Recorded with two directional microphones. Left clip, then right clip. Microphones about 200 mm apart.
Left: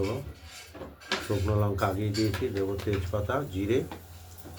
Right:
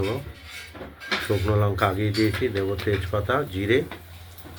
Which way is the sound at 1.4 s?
25° right (ahead or behind).